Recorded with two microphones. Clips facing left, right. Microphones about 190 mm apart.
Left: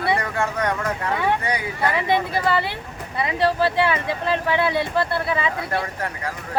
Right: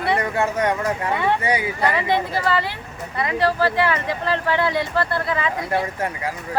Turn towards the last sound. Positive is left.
turn(degrees=-15)  # may be behind; listen again after turning